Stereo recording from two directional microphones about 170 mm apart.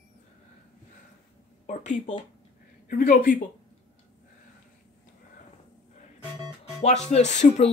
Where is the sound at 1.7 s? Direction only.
45° left (ahead or behind).